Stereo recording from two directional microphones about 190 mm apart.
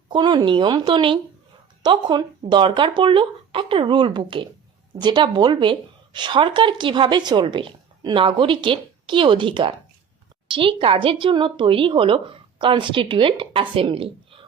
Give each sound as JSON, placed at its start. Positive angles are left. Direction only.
{"t": 0.1, "sound": "a woman's voice", "side_deg": -20}